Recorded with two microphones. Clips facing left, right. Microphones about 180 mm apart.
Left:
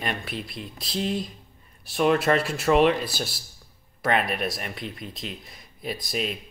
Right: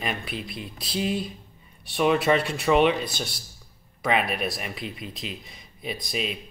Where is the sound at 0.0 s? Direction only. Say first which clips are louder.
Even; centre (ahead or behind).